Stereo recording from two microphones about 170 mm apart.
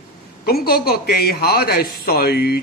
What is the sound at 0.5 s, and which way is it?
Speech, 65° left (ahead or behind).